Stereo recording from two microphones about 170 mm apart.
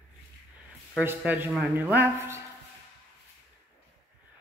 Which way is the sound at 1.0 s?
10° right (ahead or behind).